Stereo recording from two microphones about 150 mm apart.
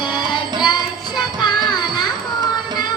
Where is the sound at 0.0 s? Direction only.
30° left (ahead or behind).